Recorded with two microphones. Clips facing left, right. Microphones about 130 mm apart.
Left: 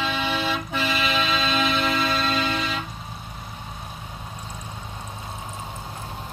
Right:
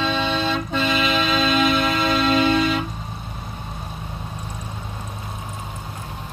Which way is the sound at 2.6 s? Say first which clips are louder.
Right 8 dB; 10° right (ahead or behind).